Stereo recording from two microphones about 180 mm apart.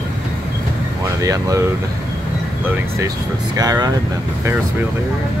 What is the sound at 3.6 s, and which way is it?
Vehicle, 20° right (ahead or behind).